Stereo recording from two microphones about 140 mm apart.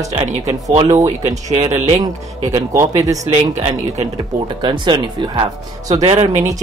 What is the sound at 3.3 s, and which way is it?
Speech, 55° right (ahead or behind).